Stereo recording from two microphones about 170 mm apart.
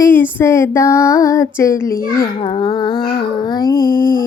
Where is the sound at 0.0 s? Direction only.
15° left (ahead or behind).